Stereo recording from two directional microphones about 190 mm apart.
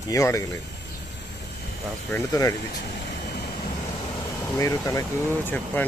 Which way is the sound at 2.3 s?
20° left (ahead or behind).